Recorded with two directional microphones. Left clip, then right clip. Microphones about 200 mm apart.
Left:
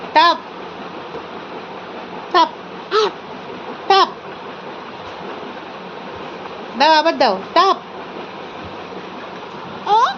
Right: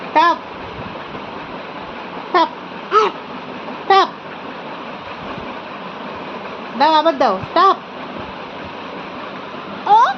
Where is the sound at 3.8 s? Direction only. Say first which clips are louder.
Right 1 dB; 15° left (ahead or behind).